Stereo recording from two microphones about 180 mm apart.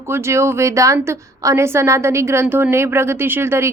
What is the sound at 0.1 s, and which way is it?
A woman's voice, 15° right (ahead or behind).